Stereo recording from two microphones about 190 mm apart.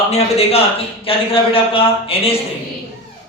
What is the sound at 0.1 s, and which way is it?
A man's voice, 35° left (ahead or behind).